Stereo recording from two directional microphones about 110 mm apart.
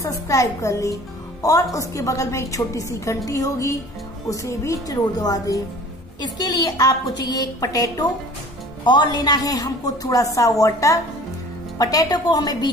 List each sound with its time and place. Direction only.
0.0 s a woman's voice: 30° left (ahead or behind)